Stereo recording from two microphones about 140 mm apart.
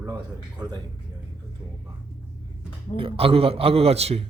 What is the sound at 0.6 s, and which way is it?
Speech, 30° right (ahead or behind).